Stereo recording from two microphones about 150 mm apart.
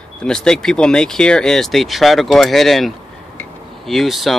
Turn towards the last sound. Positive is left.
turn(degrees=0)  # may be behind; listen again after turning